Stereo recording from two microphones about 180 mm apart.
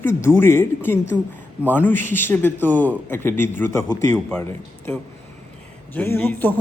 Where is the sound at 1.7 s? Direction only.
10° left (ahead or behind).